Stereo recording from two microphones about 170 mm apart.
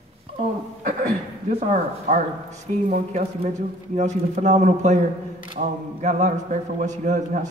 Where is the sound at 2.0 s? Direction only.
50° right (ahead or behind).